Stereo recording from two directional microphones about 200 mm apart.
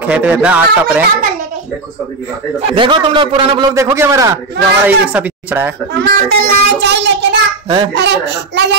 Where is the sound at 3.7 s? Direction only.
15° right (ahead or behind).